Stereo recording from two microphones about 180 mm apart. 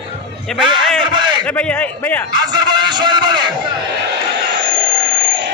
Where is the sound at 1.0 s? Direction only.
25° right (ahead or behind).